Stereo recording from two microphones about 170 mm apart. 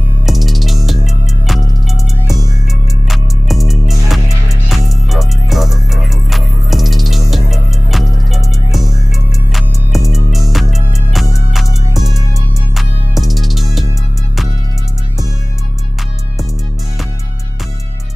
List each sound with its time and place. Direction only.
0.3 s music: centre (ahead or behind)
3.1 s music: centre (ahead or behind)